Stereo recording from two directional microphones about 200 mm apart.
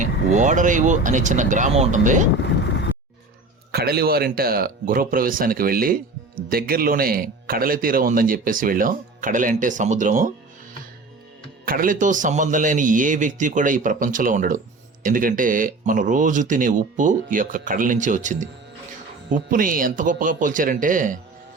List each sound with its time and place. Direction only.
0.0 s speech: 40° right (ahead or behind)
2.4 s vehicle: 60° left (ahead or behind)
3.7 s speech: 50° right (ahead or behind)
11.6 s speech: 45° right (ahead or behind)